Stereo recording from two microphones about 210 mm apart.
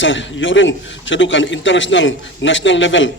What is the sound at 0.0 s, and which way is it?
A man's voice, 60° left (ahead or behind).